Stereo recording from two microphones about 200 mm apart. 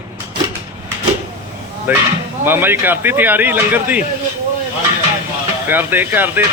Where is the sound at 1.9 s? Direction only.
10° right (ahead or behind).